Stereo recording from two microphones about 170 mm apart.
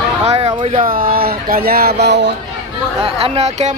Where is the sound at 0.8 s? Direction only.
55° right (ahead or behind); by 2.3 s 85° right.